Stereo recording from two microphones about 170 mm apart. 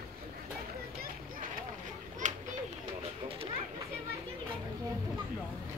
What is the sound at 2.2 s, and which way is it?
Children playing, 45° right (ahead or behind).